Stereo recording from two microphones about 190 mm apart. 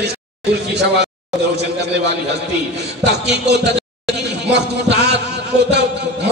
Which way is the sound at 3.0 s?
65° right (ahead or behind).